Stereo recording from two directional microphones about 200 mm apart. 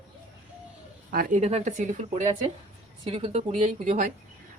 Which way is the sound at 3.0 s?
25° right (ahead or behind).